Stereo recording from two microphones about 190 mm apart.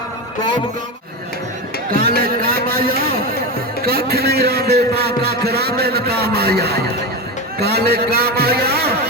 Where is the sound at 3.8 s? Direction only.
55° right (ahead or behind).